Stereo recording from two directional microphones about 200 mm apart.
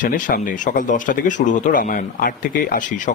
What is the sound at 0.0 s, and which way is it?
Speech, 45° left (ahead or behind).